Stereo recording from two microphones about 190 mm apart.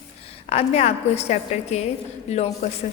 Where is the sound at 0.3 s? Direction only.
35° left (ahead or behind).